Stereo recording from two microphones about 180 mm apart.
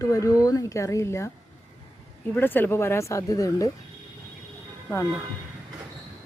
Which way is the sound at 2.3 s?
10° left (ahead or behind).